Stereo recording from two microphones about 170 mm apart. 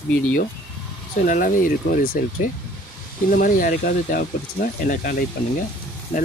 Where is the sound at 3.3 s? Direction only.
55° left (ahead or behind).